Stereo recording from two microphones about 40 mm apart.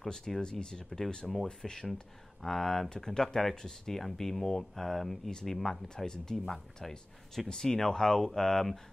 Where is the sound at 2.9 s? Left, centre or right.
Centre.